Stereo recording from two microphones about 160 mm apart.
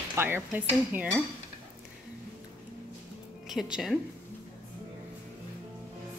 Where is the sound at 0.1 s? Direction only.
15° right (ahead or behind).